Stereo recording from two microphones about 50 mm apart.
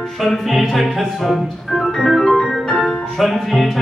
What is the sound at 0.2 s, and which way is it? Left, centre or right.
Organ, centre.